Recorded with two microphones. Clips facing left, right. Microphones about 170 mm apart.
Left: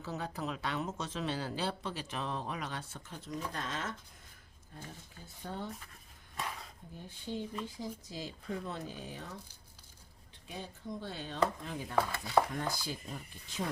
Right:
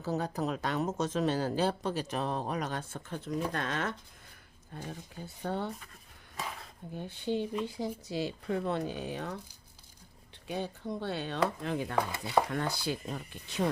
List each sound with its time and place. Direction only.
0.0 s speech: 40° right (ahead or behind); by 5.7 s 70° right (ahead or behind)
6.9 s speech: 70° right (ahead or behind)
10.4 s speech: 70° right (ahead or behind)